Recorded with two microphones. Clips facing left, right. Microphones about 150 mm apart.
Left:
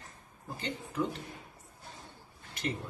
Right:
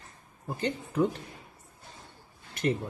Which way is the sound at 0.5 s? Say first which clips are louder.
Right 7 dB; 45° right (ahead or behind).